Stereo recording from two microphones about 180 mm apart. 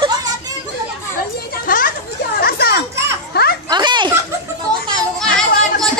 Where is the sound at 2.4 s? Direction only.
60° left (ahead or behind).